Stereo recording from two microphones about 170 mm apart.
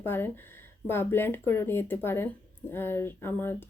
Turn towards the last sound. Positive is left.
turn(degrees=15)  # may be behind; listen again after turning